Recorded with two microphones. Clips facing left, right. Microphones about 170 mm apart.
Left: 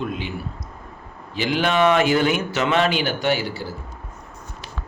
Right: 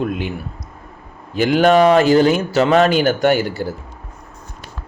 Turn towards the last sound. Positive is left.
turn(degrees=-50)  # may be behind; listen again after turning